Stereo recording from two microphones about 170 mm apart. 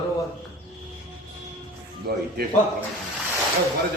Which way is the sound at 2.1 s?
70° right (ahead or behind).